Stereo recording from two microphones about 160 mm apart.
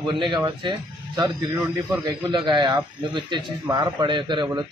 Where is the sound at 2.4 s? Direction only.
30° right (ahead or behind).